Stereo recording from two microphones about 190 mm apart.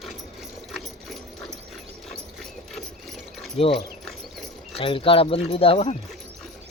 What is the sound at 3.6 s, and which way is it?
Speech, 30° left (ahead or behind).